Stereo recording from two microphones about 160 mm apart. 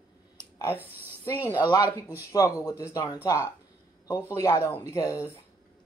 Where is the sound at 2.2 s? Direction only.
20° left (ahead or behind).